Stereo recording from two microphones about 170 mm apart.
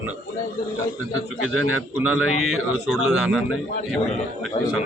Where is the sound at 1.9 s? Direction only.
10° right (ahead or behind).